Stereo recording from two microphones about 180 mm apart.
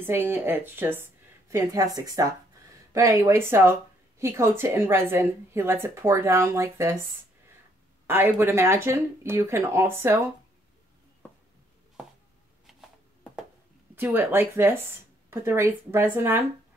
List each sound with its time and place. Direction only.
0.0 s a woman's voice: 10° right (ahead or behind)
8.1 s a woman's voice: 10° right (ahead or behind)
13.9 s a woman's voice: 10° right (ahead or behind)